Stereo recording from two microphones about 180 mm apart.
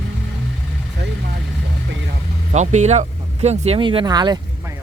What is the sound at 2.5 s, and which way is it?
Speech, 40° right (ahead or behind).